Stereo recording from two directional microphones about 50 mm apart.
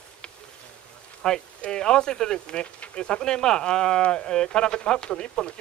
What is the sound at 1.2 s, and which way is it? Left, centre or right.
Speech, centre.